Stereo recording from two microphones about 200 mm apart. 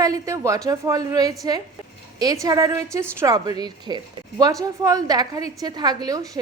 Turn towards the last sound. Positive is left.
turn(degrees=-20)  # may be behind; listen again after turning